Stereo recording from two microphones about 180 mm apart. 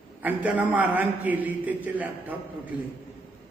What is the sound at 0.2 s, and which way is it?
A man's voice, 10° right (ahead or behind).